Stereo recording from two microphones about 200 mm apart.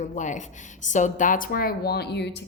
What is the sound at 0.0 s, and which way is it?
A woman's voice, 40° left (ahead or behind).